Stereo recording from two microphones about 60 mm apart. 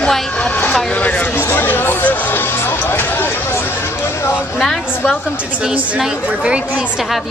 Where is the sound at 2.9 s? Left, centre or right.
Left.